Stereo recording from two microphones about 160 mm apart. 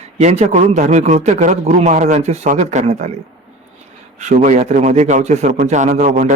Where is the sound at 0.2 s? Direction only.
45° right (ahead or behind).